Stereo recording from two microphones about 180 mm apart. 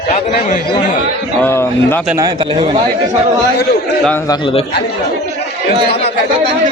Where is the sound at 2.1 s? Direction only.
20° right (ahead or behind).